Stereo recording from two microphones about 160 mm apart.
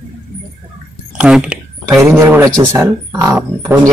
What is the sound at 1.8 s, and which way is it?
Speech, 20° right (ahead or behind).